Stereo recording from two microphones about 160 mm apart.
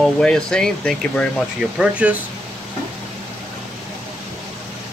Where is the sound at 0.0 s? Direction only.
5° left (ahead or behind).